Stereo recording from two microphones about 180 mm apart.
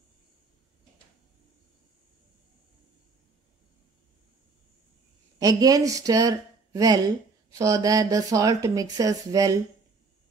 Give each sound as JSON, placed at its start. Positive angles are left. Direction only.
{"t": 5.4, "sound": "speech", "side_deg": -20}